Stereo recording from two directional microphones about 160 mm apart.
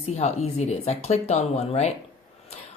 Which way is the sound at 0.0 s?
40° left (ahead or behind).